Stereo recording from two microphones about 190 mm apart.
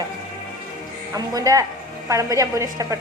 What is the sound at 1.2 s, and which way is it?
A woman's voice, 20° right (ahead or behind).